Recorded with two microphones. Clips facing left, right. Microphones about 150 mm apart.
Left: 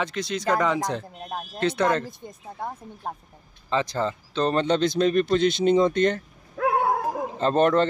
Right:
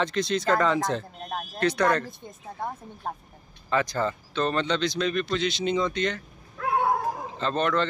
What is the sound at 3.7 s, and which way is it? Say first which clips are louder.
Speech: left 1 dB; 25° left (ahead or behind).